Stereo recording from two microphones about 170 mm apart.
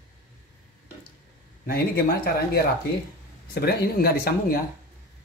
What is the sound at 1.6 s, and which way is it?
Speech, 60° left (ahead or behind).